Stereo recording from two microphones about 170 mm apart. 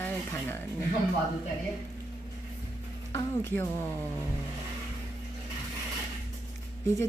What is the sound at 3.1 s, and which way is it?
Speech, 15° left (ahead or behind).